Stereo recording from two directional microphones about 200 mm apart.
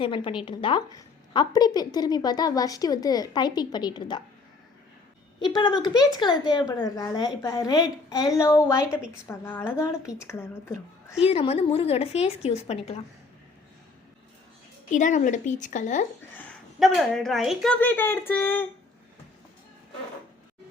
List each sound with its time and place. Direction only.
0.0 s a woman's voice: 25° left (ahead or behind)
5.4 s a woman's voice: 20° left (ahead or behind)
11.2 s a woman's voice: 30° left (ahead or behind)
14.9 s a woman's voice: 40° left (ahead or behind)
16.3 s a woman's voice: 5° left (ahead or behind)